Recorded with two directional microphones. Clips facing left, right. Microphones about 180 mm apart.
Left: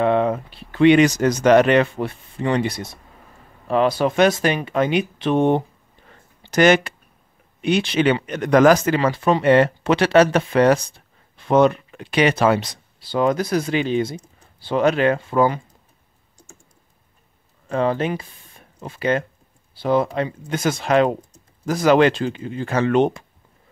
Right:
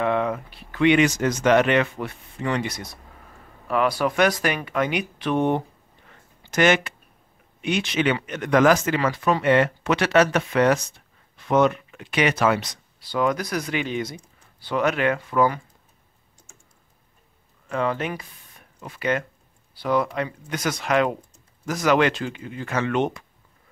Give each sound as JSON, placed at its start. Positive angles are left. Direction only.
{"t": 0.0, "sound": "speech", "side_deg": 30}
{"t": 6.0, "sound": "a sound", "side_deg": 35}
{"t": 7.6, "sound": "speech", "side_deg": 35}
{"t": 17.6, "sound": "speech", "side_deg": 30}